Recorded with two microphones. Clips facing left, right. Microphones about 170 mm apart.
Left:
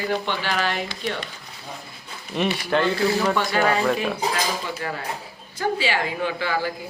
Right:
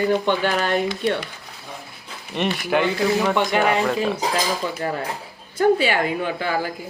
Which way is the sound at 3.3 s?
20° right (ahead or behind).